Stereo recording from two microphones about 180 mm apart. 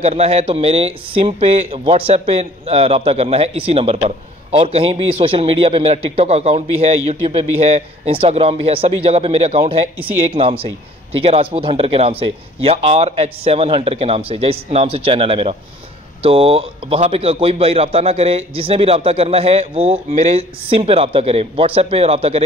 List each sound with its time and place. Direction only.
0.0 s speech: 35° right (ahead or behind)